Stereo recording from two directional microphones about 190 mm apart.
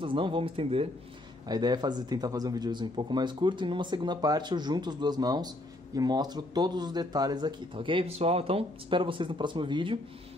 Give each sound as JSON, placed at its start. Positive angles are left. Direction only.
{"t": 0.0, "sound": "speech", "side_deg": -25}